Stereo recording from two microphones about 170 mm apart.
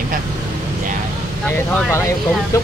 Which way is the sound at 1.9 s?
20° left (ahead or behind).